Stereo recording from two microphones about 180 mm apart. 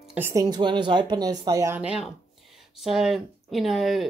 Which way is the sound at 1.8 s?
5° right (ahead or behind).